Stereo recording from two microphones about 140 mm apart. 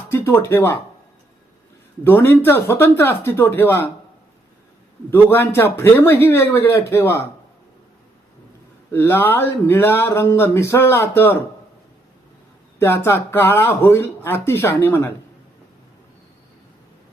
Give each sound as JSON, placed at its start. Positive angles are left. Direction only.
{"t": 0.1, "sound": "speech", "side_deg": 15}
{"t": 2.0, "sound": "speech", "side_deg": 15}
{"t": 5.1, "sound": "speech", "side_deg": 15}
{"t": 8.9, "sound": "speech", "side_deg": 15}
{"t": 12.8, "sound": "speech", "side_deg": 20}